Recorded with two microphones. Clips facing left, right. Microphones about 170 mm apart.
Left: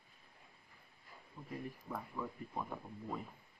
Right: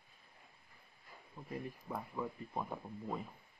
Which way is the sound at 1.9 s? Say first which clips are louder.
Right 3 dB; 20° right (ahead or behind).